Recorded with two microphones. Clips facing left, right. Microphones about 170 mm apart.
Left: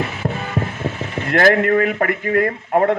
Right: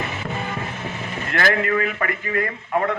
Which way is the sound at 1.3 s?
50° left (ahead or behind).